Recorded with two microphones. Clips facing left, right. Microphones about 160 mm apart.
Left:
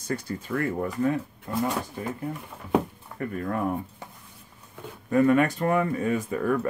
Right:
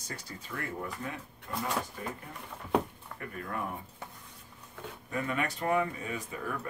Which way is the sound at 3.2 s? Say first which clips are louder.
Left 9 dB; 45° left (ahead or behind).